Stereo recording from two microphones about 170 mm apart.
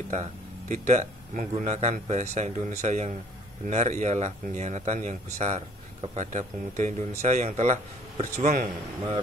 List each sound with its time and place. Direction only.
0.1 s speech: 45° right (ahead or behind)